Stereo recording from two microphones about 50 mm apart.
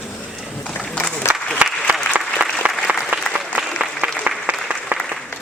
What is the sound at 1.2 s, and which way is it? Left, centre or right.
Applause, left.